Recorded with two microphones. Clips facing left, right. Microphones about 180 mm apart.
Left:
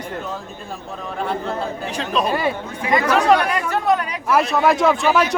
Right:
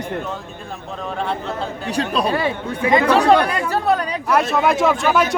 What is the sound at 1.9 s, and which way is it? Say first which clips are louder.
Speech: right 2 dB; 40° right (ahead or behind).